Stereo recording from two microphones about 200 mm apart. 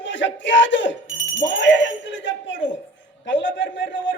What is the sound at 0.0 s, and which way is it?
A man's voice, 65° left (ahead or behind).